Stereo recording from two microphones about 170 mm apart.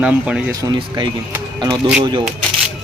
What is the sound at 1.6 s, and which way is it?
Speech, 25° right (ahead or behind).